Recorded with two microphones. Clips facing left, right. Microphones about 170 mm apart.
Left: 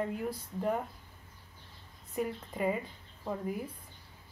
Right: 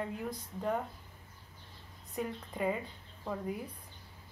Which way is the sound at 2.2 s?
5° left (ahead or behind).